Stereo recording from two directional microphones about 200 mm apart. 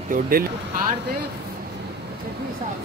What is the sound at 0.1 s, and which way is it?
Speech, 45° right (ahead or behind).